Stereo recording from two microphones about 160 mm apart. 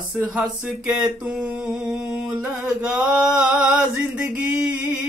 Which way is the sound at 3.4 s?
5° right (ahead or behind).